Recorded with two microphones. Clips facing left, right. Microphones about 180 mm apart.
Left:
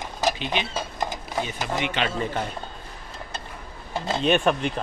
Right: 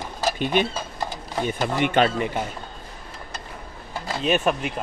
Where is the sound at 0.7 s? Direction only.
15° left (ahead or behind).